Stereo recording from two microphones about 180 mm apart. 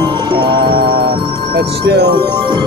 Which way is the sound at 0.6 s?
60° right (ahead or behind).